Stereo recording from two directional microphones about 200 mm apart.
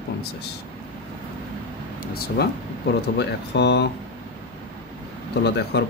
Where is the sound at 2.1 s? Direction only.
50° left (ahead or behind).